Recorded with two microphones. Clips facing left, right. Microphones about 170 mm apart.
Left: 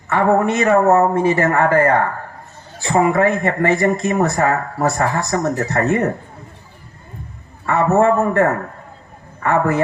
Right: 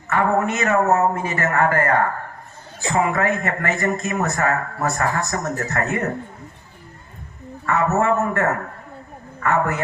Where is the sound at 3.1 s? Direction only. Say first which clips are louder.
Left 5 dB; 30° left (ahead or behind).